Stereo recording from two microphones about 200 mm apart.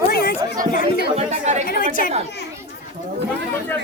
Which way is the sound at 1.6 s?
45° left (ahead or behind).